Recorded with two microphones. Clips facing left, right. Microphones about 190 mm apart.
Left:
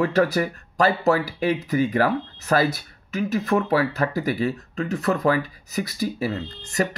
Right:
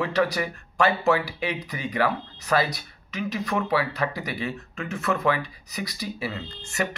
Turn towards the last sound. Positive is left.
turn(degrees=35)  # may be behind; listen again after turning